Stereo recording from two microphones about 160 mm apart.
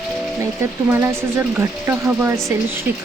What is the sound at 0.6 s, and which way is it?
Speech, 15° right (ahead or behind).